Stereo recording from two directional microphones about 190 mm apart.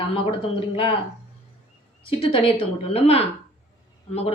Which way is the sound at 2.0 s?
30° left (ahead or behind).